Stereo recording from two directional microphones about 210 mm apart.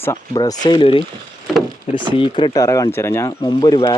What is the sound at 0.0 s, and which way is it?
A man's voice, 15° left (ahead or behind).